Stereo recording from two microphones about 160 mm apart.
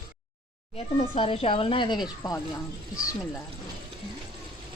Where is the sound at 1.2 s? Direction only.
35° left (ahead or behind).